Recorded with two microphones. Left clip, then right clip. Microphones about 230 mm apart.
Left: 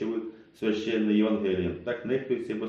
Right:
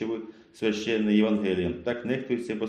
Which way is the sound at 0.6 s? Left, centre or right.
Right.